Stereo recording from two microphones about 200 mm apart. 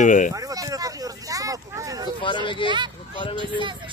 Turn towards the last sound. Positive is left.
turn(degrees=25)  # may be behind; listen again after turning